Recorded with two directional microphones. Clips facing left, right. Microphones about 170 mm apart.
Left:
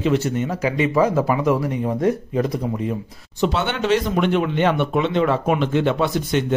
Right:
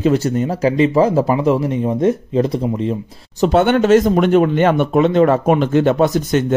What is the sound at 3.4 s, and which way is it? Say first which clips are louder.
Speech: right 8 dB; 45° right (ahead or behind).